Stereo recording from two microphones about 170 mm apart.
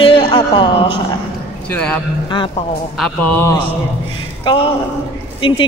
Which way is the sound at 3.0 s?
10° left (ahead or behind).